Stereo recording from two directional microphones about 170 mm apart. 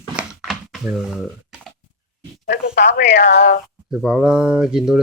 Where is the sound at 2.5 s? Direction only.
75° left (ahead or behind).